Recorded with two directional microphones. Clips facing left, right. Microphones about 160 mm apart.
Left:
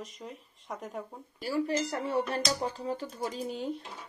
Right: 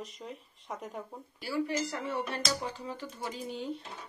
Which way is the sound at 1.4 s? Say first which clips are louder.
Left 2 dB; 40° left (ahead or behind).